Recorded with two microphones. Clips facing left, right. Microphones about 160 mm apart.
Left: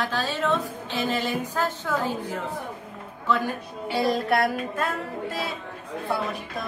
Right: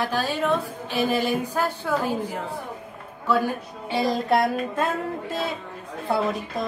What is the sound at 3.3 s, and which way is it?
Speech, 15° right (ahead or behind).